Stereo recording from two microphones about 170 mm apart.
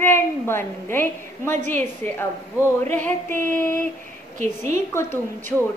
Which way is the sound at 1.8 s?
15° left (ahead or behind).